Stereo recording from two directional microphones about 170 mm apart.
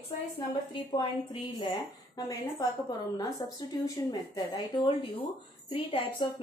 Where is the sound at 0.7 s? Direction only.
25° left (ahead or behind).